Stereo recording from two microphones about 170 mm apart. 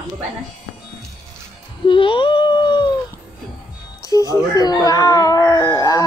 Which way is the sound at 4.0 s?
20° left (ahead or behind).